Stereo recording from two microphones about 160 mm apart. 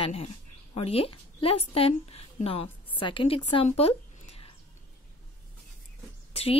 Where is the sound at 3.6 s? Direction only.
40° left (ahead or behind).